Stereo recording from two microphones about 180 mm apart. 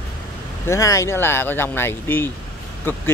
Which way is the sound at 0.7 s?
15° left (ahead or behind).